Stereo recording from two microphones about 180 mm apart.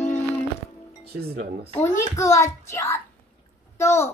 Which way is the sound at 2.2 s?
15° left (ahead or behind).